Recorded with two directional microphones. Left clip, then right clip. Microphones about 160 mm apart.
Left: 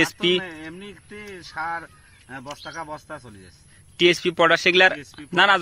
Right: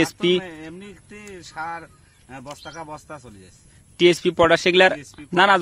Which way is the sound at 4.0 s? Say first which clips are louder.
Right 1 dB; 35° right (ahead or behind).